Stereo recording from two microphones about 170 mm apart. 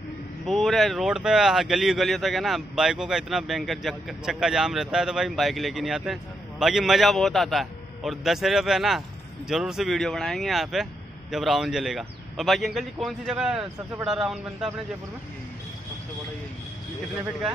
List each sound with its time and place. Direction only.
0.5 s speech: centre (ahead or behind)